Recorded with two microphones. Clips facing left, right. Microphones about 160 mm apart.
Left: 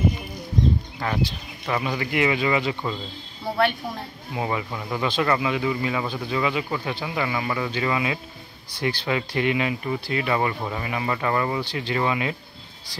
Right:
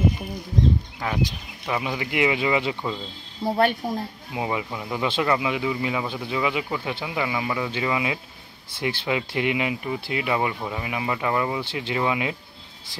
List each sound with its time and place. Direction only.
1.0 s speech: 10° right (ahead or behind)
3.8 s a woman's voice: 40° right (ahead or behind)
4.3 s speech: 10° right (ahead or behind)